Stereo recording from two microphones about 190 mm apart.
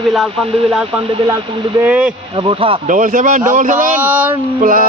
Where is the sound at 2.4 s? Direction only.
25° right (ahead or behind).